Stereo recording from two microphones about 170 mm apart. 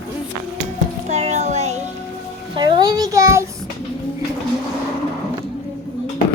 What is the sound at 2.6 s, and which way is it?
Speech, 25° right (ahead or behind).